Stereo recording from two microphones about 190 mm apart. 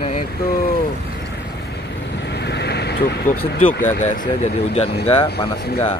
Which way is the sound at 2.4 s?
60° left (ahead or behind).